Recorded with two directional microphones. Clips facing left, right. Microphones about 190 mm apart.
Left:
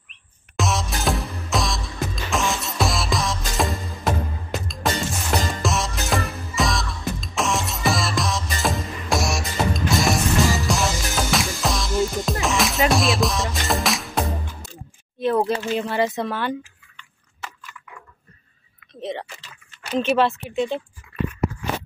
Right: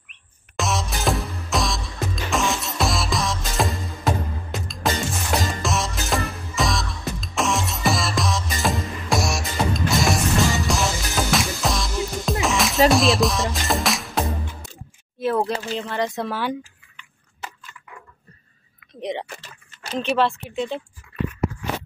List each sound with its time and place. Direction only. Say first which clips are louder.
0.6 s music: left 1 dB; centre (ahead or behind)
15.1 s a sound: left 2 dB; centre (ahead or behind)
15.9 s speech: left 1 dB; 5° left (ahead or behind)
16.3 s speech: even; 10° right (ahead or behind)
18.9 s speech: right 1 dB; 15° right (ahead or behind)
19.2 s speech: right 4 dB; 55° right (ahead or behind)
20.0 s speech: left 2 dB; centre (ahead or behind)